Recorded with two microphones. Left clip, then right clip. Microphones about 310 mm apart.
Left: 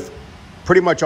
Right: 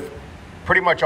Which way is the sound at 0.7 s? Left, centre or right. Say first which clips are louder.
Left 2 dB; left.